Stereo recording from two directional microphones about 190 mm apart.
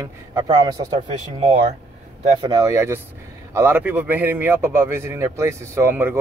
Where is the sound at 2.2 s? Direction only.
25° right (ahead or behind).